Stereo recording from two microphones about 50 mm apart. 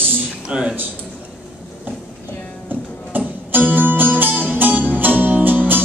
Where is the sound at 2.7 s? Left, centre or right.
Right.